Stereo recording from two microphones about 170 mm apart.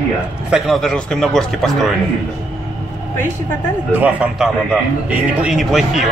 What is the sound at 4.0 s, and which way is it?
A man's voice, 5° right (ahead or behind).